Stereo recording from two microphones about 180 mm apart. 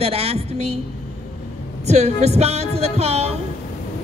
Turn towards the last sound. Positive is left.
turn(degrees=-35)  # may be behind; listen again after turning